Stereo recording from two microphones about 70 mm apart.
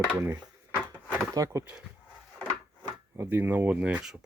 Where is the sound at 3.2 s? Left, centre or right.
Right.